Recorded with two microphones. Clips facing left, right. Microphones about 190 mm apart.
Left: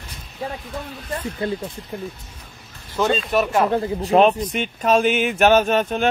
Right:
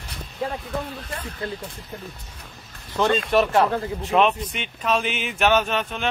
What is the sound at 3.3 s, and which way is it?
Speech, 5° left (ahead or behind).